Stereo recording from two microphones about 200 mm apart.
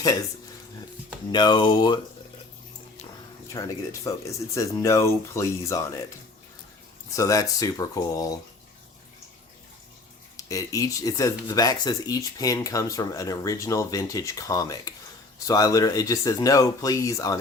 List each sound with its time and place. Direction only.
1.3 s speech: 20° left (ahead or behind)
3.5 s speech: 15° left (ahead or behind)
7.1 s speech: 15° left (ahead or behind)
10.3 s speech: 15° left (ahead or behind)